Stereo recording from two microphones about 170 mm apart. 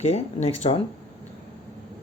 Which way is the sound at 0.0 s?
40° left (ahead or behind).